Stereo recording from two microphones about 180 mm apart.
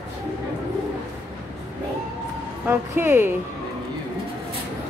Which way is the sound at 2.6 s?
10° right (ahead or behind).